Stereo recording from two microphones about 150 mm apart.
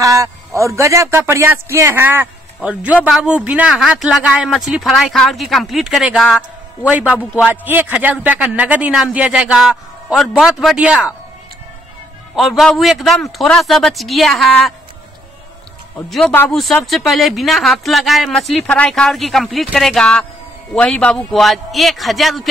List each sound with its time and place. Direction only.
0.0 s a man's voice: 20° right (ahead or behind)
12.4 s speech: centre (ahead or behind)
16.1 s speech: 5° left (ahead or behind)